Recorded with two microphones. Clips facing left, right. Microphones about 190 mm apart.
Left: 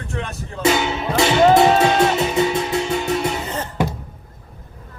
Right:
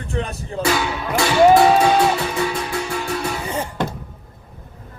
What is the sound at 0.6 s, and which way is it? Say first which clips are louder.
Speech: left 2 dB; 20° left (ahead or behind).